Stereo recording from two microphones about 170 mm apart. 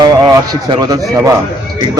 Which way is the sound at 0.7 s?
25° right (ahead or behind).